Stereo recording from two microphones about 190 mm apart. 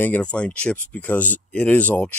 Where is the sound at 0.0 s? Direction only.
5° left (ahead or behind).